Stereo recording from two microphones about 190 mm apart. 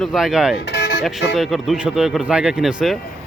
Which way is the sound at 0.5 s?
60° left (ahead or behind).